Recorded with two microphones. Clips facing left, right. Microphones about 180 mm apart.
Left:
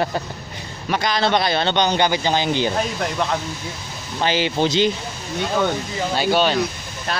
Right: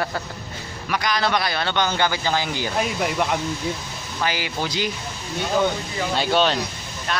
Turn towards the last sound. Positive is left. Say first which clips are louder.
# left 1 dB
turn(degrees=40)  # may be behind; listen again after turning